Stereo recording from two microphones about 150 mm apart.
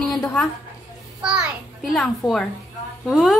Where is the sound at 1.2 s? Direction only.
5° right (ahead or behind).